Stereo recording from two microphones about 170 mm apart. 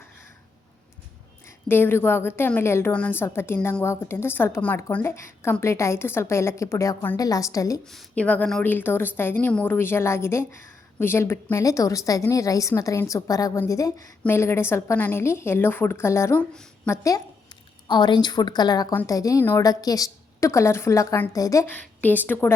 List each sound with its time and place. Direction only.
1.5 s a woman's voice: 15° left (ahead or behind)
7.9 s a woman's voice: 5° left (ahead or behind)